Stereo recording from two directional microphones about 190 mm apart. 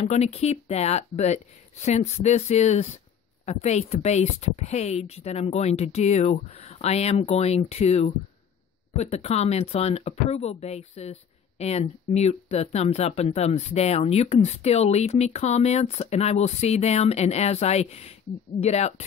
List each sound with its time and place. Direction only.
0.0 s speech: 35° left (ahead or behind)